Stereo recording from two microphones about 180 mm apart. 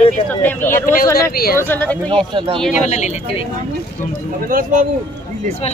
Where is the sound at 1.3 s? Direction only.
55° left (ahead or behind).